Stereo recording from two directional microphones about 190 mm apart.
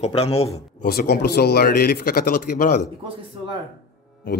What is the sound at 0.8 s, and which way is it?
A man's voice, 50° left (ahead or behind).